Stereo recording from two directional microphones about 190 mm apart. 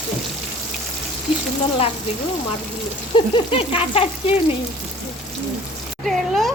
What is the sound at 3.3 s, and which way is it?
Speech, 30° left (ahead or behind).